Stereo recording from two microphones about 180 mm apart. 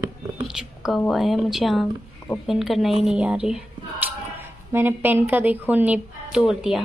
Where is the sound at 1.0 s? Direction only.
Centre (ahead or behind).